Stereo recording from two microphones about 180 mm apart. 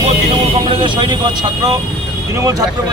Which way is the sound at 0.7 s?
25° right (ahead or behind).